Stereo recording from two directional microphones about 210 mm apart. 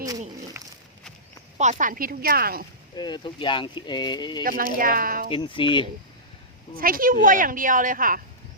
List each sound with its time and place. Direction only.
0.0 s a sound: 15° right (ahead or behind)
1.5 s a woman's voice: 35° right (ahead or behind)
2.9 s speech: 20° left (ahead or behind)
4.4 s a woman's voice: 40° right (ahead or behind)
5.3 s speech: 25° left (ahead or behind)
6.7 s a woman's voice: 45° right (ahead or behind)